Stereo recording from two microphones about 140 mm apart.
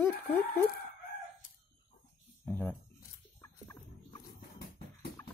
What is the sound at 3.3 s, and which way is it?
Turkey, 20° left (ahead or behind).